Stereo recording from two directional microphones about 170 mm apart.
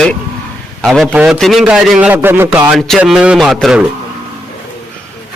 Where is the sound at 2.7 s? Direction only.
Centre (ahead or behind).